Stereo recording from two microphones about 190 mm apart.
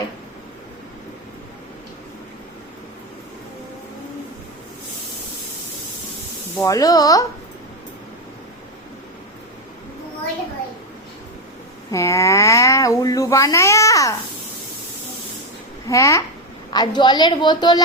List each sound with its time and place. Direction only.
6.6 s speech: 15° left (ahead or behind)
11.9 s speech: 15° left (ahead or behind)
15.9 s a woman's voice: 15° left (ahead or behind)